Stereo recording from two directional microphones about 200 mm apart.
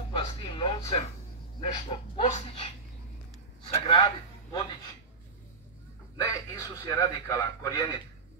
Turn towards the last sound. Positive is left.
turn(degrees=20)  # may be behind; listen again after turning